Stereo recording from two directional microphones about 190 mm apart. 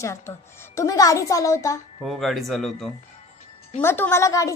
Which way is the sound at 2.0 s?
Centre (ahead or behind).